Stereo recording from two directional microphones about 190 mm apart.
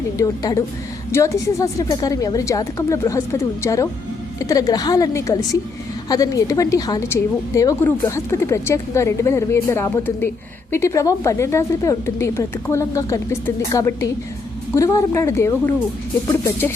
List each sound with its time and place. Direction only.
0.2 s a woman's voice: 15° left (ahead or behind)